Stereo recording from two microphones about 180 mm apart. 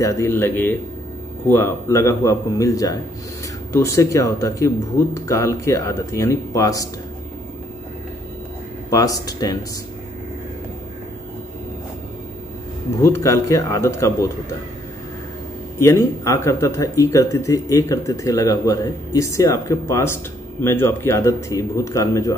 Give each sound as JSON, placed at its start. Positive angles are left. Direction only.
{"t": 0.0, "sound": "speech", "side_deg": 15}
{"t": 8.9, "sound": "speech", "side_deg": 20}
{"t": 13.0, "sound": "speech", "side_deg": 15}
{"t": 15.8, "sound": "speech", "side_deg": 15}